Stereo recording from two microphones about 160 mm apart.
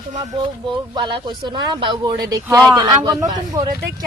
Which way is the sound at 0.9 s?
30° right (ahead or behind).